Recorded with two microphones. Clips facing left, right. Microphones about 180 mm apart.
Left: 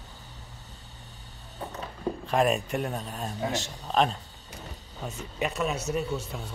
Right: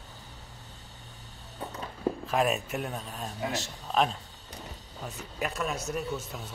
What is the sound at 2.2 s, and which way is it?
A man's voice, centre (ahead or behind).